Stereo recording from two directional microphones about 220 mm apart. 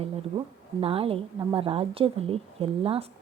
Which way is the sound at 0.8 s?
25° right (ahead or behind).